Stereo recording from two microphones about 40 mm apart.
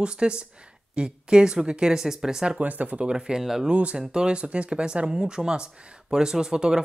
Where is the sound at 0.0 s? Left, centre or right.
Right.